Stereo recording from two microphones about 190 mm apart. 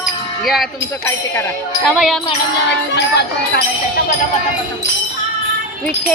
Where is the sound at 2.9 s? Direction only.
60° left (ahead or behind).